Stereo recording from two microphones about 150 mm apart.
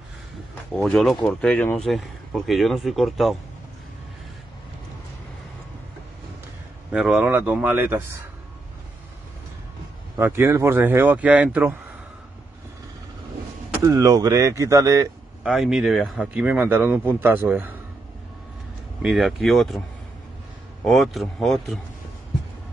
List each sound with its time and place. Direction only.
0.7 s speech: centre (ahead or behind)
6.9 s a man's voice: 5° right (ahead or behind)
10.1 s a man's voice: 15° right (ahead or behind)
13.8 s speech: 25° right (ahead or behind)
15.4 s a man's voice: centre (ahead or behind)
19.0 s speech: centre (ahead or behind)
20.8 s speech: centre (ahead or behind)